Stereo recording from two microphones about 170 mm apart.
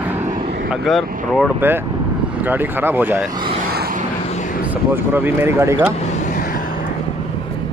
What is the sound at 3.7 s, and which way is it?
Vehicle, 65° right (ahead or behind).